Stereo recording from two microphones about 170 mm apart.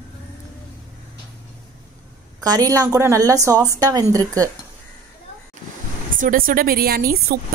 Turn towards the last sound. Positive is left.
turn(degrees=-60)  # may be behind; listen again after turning